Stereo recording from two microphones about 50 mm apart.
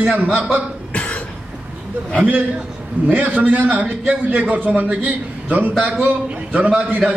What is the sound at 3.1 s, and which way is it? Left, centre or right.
A man's voice, right.